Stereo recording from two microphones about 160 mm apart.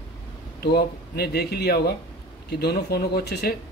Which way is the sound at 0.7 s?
80° left.